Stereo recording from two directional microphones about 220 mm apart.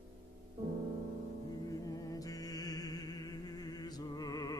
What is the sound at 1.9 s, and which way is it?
Music, 15° left (ahead or behind).